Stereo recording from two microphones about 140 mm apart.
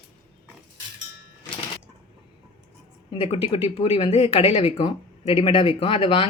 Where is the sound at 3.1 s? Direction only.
40° left (ahead or behind).